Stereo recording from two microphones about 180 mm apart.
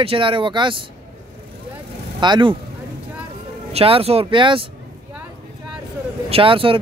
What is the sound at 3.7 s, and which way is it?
Speech, 30° right (ahead or behind).